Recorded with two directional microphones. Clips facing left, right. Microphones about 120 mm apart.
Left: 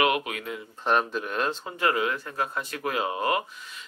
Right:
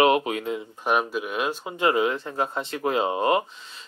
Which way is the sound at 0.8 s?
10° right (ahead or behind).